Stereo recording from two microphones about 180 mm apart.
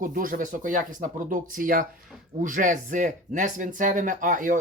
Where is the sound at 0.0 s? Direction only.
50° right (ahead or behind).